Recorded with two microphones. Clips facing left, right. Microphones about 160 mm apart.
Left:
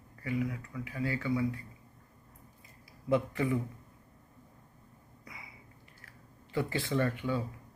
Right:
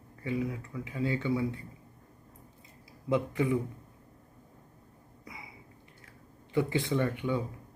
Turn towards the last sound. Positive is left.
turn(degrees=-20)  # may be behind; listen again after turning